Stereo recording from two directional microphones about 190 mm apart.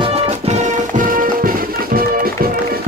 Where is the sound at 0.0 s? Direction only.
30° right (ahead or behind).